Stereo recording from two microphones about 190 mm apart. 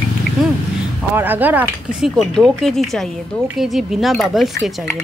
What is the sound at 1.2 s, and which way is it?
Speech, 10° right (ahead or behind).